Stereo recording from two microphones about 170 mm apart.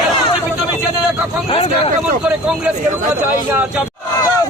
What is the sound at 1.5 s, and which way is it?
Speech, 35° left (ahead or behind).